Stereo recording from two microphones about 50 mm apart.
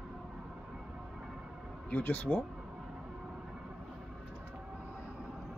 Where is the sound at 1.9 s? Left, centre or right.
Left.